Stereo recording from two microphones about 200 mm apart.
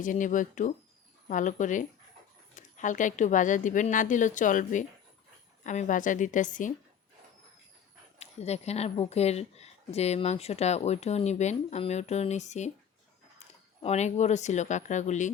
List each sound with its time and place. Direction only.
0.0 s speech: 40° left (ahead or behind)
8.2 s speech: 30° left (ahead or behind)